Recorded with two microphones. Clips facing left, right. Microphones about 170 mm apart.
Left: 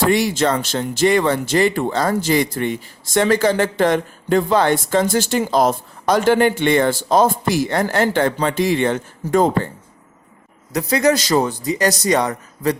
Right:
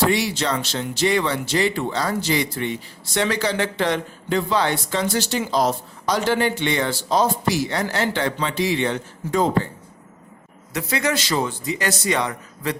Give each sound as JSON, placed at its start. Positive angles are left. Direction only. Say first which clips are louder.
{"t": 0.0, "sound": "speech", "louder": "left 4 dB", "side_deg": 50}
{"t": 10.7, "sound": "a man's voice", "louder": "left 7 dB", "side_deg": 40}